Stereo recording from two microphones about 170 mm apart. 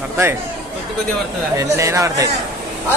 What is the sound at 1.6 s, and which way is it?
Speech, 20° right (ahead or behind).